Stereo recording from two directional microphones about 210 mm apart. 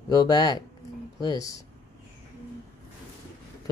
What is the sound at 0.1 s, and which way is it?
Speech, 20° left (ahead or behind).